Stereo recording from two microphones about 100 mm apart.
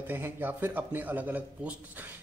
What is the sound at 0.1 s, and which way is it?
A man's voice, 20° right (ahead or behind).